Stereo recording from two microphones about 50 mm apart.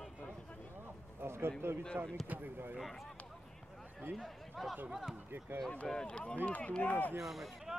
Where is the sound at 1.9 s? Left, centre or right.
Right.